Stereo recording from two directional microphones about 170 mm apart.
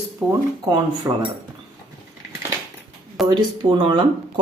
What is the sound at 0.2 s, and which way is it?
Speech, 10° right (ahead or behind).